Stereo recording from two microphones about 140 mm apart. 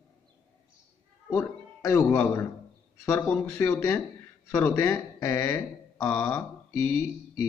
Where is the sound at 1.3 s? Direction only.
20° left (ahead or behind).